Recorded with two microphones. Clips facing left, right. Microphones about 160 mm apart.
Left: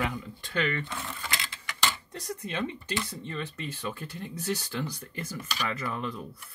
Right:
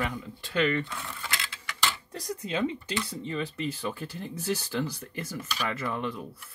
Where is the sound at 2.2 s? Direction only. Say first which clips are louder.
Right 4 dB; 10° right (ahead or behind).